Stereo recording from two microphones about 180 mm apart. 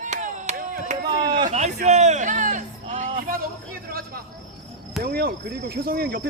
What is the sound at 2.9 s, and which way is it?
Music, 40° right (ahead or behind).